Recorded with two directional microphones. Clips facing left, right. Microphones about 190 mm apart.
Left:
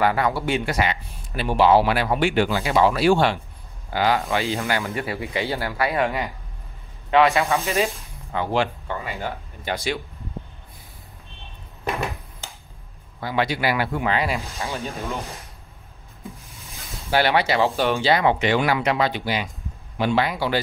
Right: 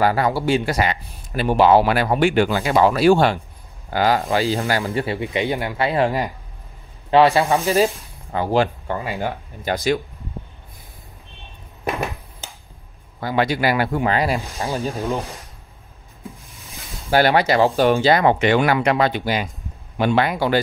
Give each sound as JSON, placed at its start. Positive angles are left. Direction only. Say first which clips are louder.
{"t": 0.0, "sound": "speech", "louder": "right 3 dB", "side_deg": -35}
{"t": 12.4, "sound": "a sound", "louder": "right 1 dB", "side_deg": -20}
{"t": 13.2, "sound": "speech", "louder": "right 3 dB", "side_deg": -45}
{"t": 17.1, "sound": "speech", "louder": "right 4 dB", "side_deg": -45}